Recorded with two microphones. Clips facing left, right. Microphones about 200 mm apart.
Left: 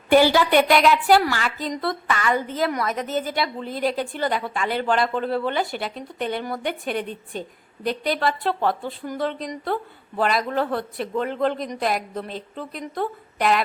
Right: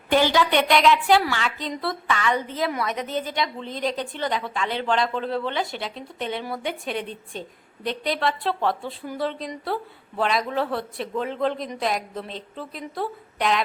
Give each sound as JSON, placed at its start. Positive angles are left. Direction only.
{"t": 0.1, "sound": "a woman's voice", "side_deg": 10}